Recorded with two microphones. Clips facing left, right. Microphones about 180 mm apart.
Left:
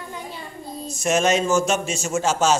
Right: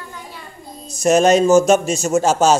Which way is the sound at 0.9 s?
40° right (ahead or behind).